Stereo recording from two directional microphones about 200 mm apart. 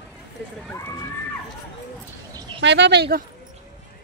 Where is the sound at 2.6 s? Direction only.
60° right (ahead or behind).